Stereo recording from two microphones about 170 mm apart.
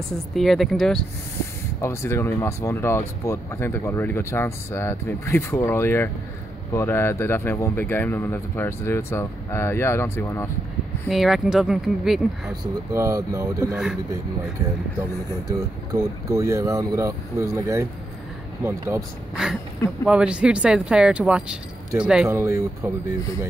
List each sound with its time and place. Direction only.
0.3 s speech: centre (ahead or behind)
1.8 s speech: 15° left (ahead or behind)
11.1 s speech: centre (ahead or behind)
12.9 s speech: 15° right (ahead or behind)
15.9 s speech: 20° right (ahead or behind)
19.3 s speech: 5° right (ahead or behind)